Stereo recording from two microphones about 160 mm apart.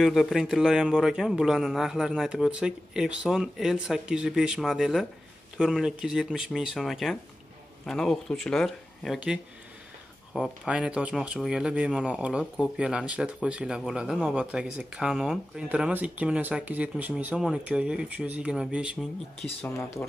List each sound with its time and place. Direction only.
0.0 s speech: centre (ahead or behind)
19.7 s speech: 15° left (ahead or behind)